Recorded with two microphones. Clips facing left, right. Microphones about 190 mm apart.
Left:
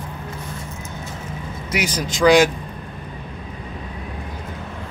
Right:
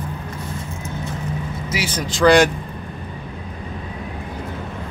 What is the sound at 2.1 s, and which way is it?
Speech, 10° left (ahead or behind).